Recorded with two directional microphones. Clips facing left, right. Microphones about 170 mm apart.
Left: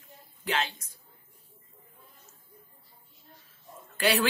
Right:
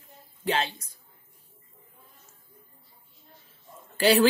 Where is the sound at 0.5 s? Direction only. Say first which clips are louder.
Right 3 dB; 30° right (ahead or behind).